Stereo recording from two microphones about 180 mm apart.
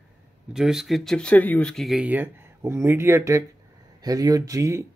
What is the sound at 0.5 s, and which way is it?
Speech, 5° right (ahead or behind).